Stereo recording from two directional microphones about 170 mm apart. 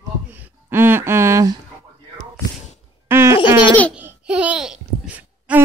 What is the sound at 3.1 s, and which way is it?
Plop, 15° right (ahead or behind).